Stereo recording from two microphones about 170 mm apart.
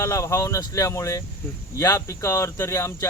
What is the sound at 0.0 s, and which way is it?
Speech, 20° left (ahead or behind).